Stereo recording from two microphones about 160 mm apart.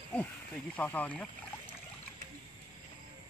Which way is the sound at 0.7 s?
10° left (ahead or behind).